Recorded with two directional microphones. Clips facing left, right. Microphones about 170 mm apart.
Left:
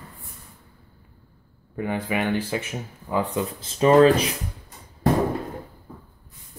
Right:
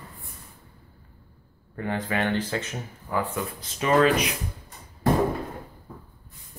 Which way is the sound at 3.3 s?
30° left (ahead or behind).